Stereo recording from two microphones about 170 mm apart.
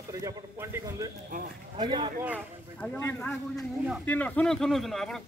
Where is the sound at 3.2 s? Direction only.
Centre (ahead or behind).